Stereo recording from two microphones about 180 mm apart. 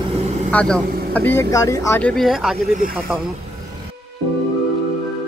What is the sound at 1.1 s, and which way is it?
Speech, 10° left (ahead or behind).